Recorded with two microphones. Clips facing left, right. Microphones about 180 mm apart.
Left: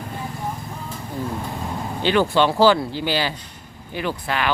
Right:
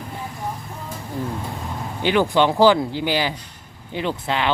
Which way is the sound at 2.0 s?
15° right (ahead or behind).